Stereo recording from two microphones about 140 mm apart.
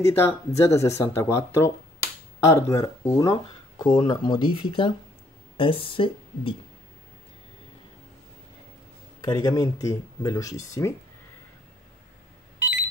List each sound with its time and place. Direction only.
0.0 s speech: 20° left (ahead or behind); by 6.5 s 40° left (ahead or behind)
9.2 s speech: 30° left (ahead or behind)